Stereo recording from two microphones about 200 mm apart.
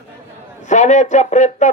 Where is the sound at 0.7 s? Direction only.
35° left (ahead or behind).